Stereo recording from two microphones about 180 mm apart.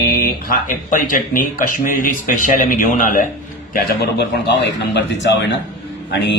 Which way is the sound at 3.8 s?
70° left (ahead or behind).